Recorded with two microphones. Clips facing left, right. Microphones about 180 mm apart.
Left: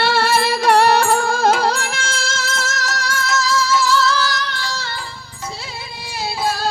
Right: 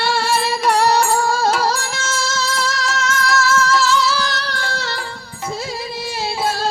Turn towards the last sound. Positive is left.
turn(degrees=-65)  # may be behind; listen again after turning